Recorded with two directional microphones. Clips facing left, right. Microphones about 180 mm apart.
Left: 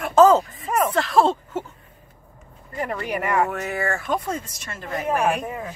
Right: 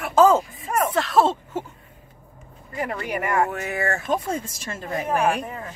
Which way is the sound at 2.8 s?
5° right (ahead or behind).